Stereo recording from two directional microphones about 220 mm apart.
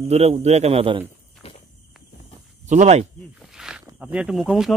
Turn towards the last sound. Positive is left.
turn(degrees=0)  # may be behind; listen again after turning